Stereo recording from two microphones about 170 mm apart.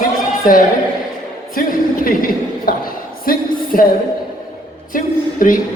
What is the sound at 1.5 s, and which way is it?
Speech, 55° left (ahead or behind).